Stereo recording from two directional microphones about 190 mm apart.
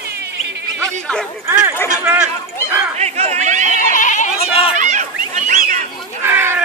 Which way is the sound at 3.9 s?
40° left (ahead or behind).